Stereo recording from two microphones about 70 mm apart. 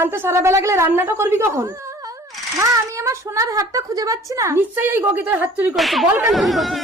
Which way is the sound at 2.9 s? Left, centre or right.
Right.